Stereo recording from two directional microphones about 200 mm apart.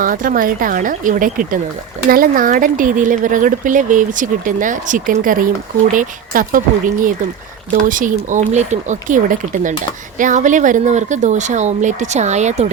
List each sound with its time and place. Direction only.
0.0 s speech: 45° right (ahead or behind)